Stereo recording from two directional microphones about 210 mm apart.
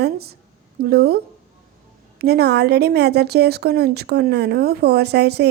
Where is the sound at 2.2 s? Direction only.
50° right (ahead or behind).